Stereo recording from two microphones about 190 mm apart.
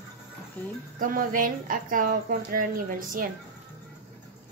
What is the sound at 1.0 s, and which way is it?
A woman's voice, 45° right (ahead or behind).